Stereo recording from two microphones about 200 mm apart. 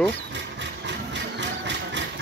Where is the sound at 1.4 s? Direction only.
60° right (ahead or behind).